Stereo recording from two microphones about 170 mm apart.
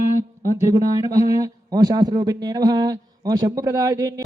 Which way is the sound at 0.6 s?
20° right (ahead or behind).